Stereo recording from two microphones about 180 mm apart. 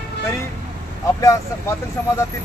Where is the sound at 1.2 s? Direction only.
15° left (ahead or behind).